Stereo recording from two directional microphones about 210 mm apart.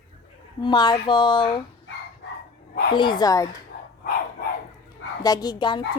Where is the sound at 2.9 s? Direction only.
20° left (ahead or behind).